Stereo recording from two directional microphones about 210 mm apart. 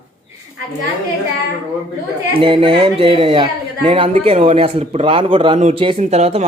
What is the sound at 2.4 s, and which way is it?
Speech, 25° right (ahead or behind).